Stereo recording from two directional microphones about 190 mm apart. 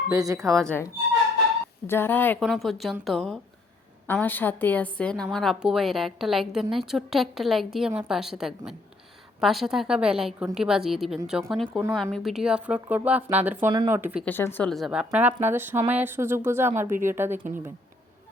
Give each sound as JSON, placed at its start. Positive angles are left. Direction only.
{"t": 0.1, "sound": "speech", "side_deg": -20}
{"t": 0.6, "sound": "a woman's voice", "side_deg": 5}
{"t": 1.9, "sound": "a woman's voice", "side_deg": 10}
{"t": 14.3, "sound": "a woman's voice", "side_deg": 10}